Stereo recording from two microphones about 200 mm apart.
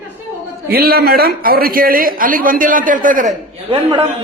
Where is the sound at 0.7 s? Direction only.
50° right (ahead or behind).